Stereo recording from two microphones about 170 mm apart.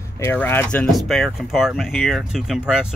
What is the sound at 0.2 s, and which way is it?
Speech, 15° left (ahead or behind).